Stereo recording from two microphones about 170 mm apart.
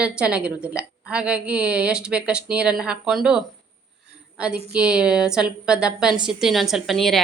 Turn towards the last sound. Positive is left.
turn(degrees=0)  # may be behind; listen again after turning